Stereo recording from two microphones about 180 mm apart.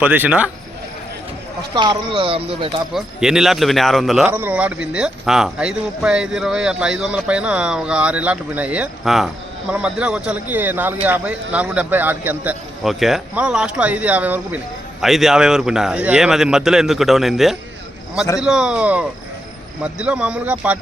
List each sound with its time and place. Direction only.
0.0 s a man's voice: 10° right (ahead or behind)
1.7 s speech: 25° right (ahead or behind)
2.9 s a man's voice: 5° right (ahead or behind)